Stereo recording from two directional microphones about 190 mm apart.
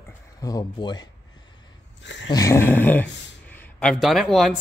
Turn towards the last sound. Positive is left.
turn(degrees=0)  # may be behind; listen again after turning